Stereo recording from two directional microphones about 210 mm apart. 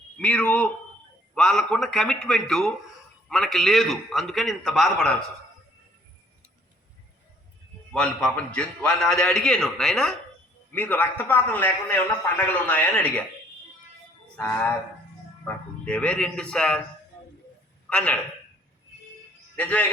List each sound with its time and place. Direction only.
0.2 s a man's voice: 5° left (ahead or behind)
7.9 s a man's voice: 5° left (ahead or behind)
15.4 s a man's voice: 5° left (ahead or behind)
17.8 s a man's voice: 5° left (ahead or behind)
19.5 s a man's voice: 5° left (ahead or behind)